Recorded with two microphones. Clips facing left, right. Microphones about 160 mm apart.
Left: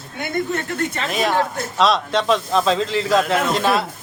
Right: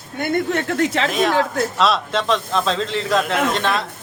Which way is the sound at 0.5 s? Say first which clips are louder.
Right 4 dB; 90° right.